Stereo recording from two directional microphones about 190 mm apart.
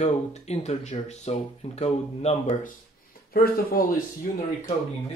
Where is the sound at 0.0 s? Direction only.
35° left (ahead or behind).